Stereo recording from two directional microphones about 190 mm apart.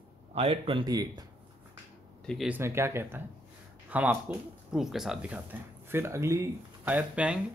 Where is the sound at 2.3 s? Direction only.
Centre (ahead or behind).